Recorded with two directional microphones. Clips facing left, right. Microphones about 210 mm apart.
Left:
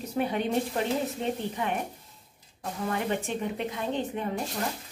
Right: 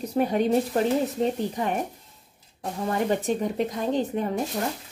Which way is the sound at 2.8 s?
40° right (ahead or behind).